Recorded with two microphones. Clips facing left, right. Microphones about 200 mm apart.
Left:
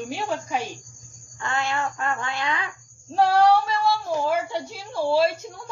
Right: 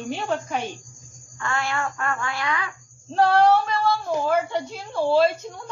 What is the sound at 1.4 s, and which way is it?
Child singing, 20° left (ahead or behind).